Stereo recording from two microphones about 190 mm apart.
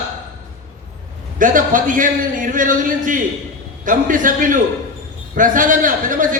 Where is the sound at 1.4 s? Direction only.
45° right (ahead or behind).